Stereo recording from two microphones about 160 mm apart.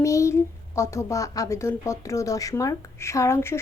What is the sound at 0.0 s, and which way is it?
A woman's voice, 20° left (ahead or behind).